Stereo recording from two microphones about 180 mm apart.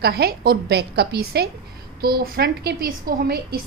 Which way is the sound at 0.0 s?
60° right (ahead or behind).